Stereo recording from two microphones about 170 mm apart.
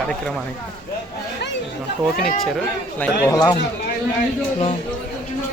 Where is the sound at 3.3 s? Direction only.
20° left (ahead or behind).